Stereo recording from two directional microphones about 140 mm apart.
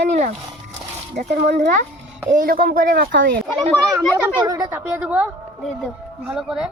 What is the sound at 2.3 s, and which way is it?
Speech, 85° right.